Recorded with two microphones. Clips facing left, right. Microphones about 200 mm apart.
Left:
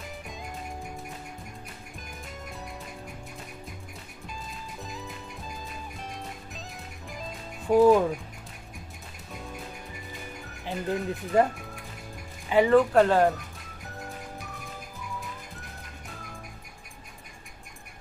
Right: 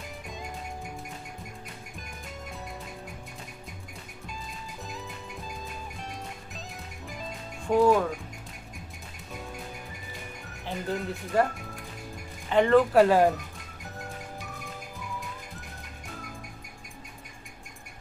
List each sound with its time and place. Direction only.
4.8 s music: centre (ahead or behind)
7.6 s speech: 15° left (ahead or behind)
10.6 s speech: 15° left (ahead or behind)
12.4 s speech: 5° left (ahead or behind)
12.9 s speech: 5° right (ahead or behind)